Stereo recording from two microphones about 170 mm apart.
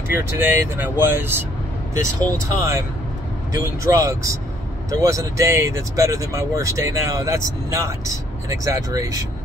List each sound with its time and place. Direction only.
0.1 s speech: 10° right (ahead or behind)